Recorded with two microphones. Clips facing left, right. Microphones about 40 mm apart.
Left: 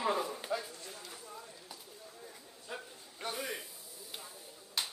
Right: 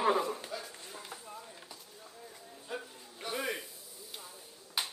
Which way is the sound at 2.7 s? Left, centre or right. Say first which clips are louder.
Right 3 dB; centre.